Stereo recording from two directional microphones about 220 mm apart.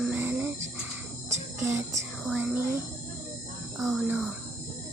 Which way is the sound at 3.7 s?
Centre (ahead or behind).